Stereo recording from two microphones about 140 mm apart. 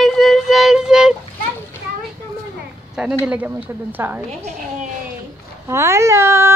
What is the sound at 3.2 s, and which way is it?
Speech, 10° right (ahead or behind).